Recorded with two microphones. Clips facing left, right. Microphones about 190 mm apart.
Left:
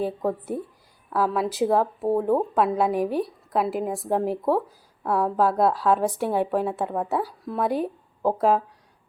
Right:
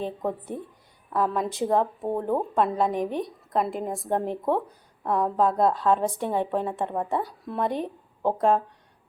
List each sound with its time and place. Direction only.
0.0 s a woman's voice: 5° left (ahead or behind)